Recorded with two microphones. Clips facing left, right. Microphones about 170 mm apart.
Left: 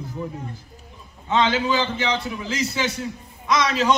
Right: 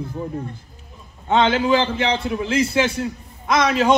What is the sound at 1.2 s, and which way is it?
A man's voice, 55° right (ahead or behind).